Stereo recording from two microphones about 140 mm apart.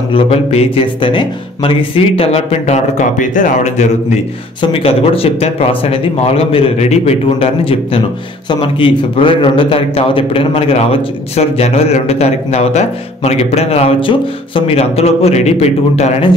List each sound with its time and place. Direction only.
0.1 s a man's voice: 45° left (ahead or behind)
4.6 s a man's voice: 45° left (ahead or behind)